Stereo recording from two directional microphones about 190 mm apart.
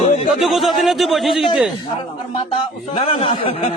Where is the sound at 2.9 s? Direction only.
30° left (ahead or behind).